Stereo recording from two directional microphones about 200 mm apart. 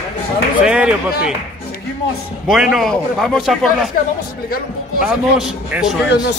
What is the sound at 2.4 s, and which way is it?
A man's voice, centre (ahead or behind).